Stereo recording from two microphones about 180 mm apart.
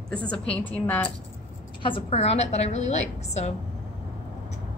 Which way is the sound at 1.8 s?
30° left (ahead or behind).